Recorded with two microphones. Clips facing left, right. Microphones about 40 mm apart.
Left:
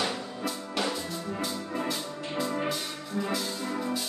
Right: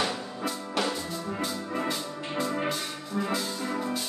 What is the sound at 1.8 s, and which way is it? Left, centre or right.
Music, centre.